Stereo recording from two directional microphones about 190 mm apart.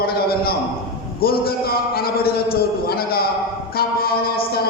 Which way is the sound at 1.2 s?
55° left (ahead or behind).